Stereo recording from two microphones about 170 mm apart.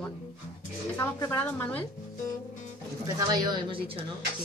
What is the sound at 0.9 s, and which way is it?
Speech, 15° left (ahead or behind).